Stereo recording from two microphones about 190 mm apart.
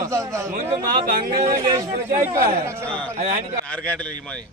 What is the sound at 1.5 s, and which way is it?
Speech, 25° right (ahead or behind).